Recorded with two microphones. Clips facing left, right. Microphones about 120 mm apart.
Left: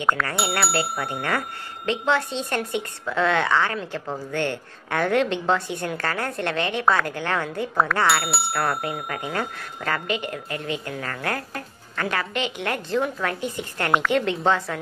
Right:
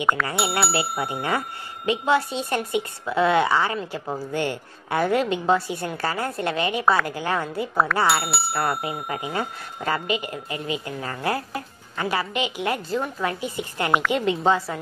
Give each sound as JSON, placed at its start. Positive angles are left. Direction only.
{"t": 0.0, "sound": "a woman's voice", "side_deg": -10}